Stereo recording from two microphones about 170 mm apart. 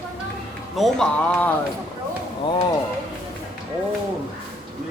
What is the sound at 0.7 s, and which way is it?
Speech, centre (ahead or behind).